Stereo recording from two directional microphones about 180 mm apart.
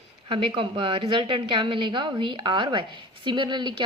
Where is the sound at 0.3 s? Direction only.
30° right (ahead or behind).